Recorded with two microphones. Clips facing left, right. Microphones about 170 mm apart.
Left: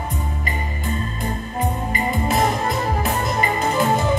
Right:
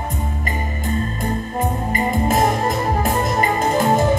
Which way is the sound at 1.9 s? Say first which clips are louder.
Right 3 dB; 40° right (ahead or behind).